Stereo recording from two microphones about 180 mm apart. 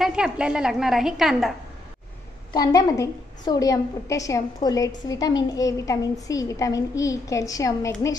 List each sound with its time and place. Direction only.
0.0 s a woman's voice: 5° right (ahead or behind)
2.5 s a woman's voice: 20° left (ahead or behind)